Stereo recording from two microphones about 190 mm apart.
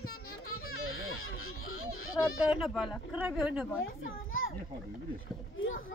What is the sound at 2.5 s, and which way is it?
Speech, centre (ahead or behind).